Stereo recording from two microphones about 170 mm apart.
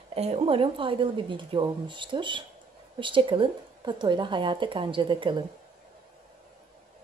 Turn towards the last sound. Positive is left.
turn(degrees=-30)  # may be behind; listen again after turning